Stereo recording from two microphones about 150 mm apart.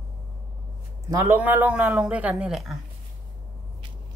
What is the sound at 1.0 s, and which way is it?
A man's voice, 15° right (ahead or behind).